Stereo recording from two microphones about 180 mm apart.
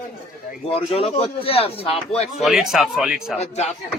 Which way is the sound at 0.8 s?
30° left (ahead or behind).